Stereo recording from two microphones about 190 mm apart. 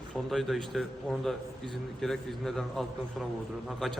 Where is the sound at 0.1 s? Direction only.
Centre (ahead or behind).